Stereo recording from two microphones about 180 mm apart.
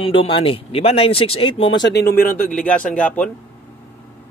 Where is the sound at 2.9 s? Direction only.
10° left (ahead or behind).